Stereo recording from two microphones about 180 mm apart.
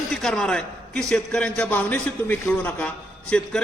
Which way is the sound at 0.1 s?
5° left (ahead or behind).